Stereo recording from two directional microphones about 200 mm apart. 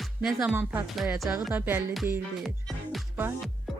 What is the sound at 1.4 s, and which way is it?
Music, 10° right (ahead or behind).